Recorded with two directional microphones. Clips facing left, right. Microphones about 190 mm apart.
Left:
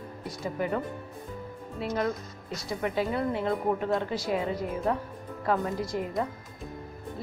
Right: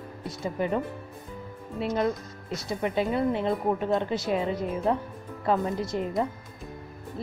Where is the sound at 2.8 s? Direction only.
20° right (ahead or behind).